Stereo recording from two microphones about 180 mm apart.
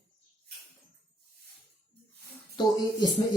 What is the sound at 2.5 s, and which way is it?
Speech, 25° left (ahead or behind).